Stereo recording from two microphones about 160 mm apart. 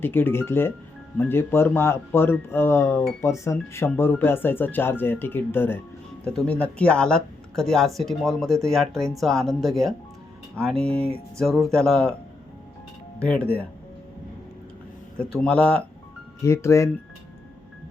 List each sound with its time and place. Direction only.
0.0 s speech: 15° left (ahead or behind)
13.1 s speech: 10° left (ahead or behind)
15.2 s speech: 5° left (ahead or behind)